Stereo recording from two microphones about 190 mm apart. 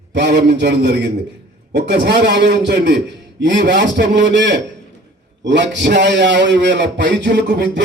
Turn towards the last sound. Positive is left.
turn(degrees=-65)  # may be behind; listen again after turning